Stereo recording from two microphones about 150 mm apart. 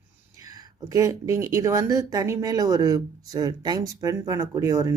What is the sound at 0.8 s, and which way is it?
Speech, 20° right (ahead or behind).